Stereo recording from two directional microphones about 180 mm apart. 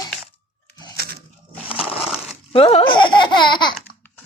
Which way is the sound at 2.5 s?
30° left (ahead or behind).